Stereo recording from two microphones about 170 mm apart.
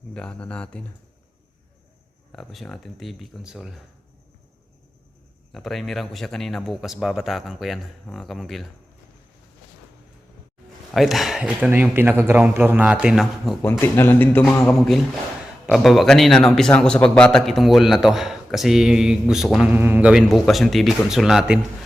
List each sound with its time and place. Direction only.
0.1 s a man's voice: 5° left (ahead or behind)
2.3 s speech: centre (ahead or behind)
5.5 s speech: centre (ahead or behind)
10.9 s speech: centre (ahead or behind)
13.6 s a man's voice: 10° left (ahead or behind)
14.4 s speech: centre (ahead or behind)